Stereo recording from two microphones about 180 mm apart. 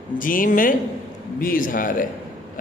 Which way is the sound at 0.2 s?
50° left (ahead or behind).